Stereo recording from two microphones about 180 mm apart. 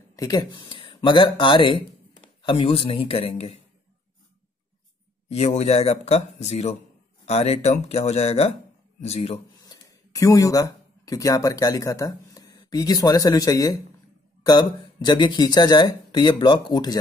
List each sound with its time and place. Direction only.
0.1 s speech: 20° left (ahead or behind)
5.3 s speech: 35° left (ahead or behind)
9.7 s speech: 20° left (ahead or behind)